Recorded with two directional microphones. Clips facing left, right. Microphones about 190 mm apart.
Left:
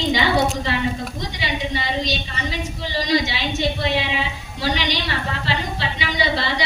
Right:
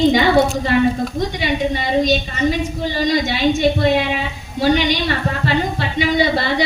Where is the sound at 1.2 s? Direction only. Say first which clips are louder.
Right 7 dB; 50° right (ahead or behind).